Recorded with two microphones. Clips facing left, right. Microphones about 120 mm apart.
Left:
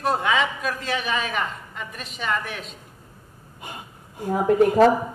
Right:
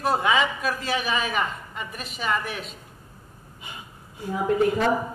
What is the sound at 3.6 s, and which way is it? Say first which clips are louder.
Speech: left 4 dB; 50° left (ahead or behind).